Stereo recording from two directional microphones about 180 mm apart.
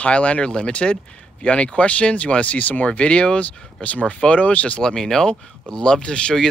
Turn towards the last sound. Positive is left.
turn(degrees=5)  # may be behind; listen again after turning